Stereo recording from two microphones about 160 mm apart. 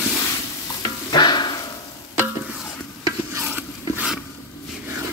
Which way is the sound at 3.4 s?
10° right (ahead or behind).